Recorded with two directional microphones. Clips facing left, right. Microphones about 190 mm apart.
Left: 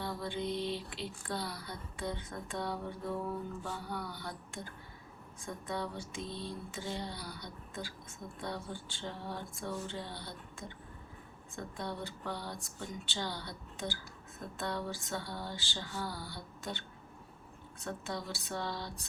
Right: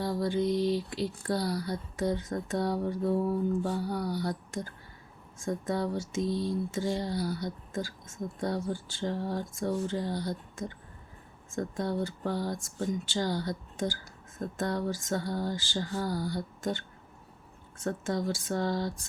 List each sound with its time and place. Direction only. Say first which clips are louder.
0.0 s speech: right 9 dB; 40° right (ahead or behind)
3.6 s a sound: right 9 dB; 40° right (ahead or behind)
11.5 s speech: right 9 dB; 45° right (ahead or behind)